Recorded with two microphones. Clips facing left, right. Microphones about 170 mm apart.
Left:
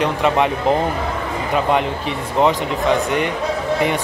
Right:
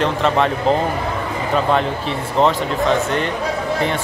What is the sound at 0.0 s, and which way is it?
Speech, 10° left (ahead or behind).